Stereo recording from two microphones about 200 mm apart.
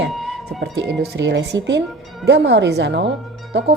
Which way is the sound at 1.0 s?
60° right (ahead or behind).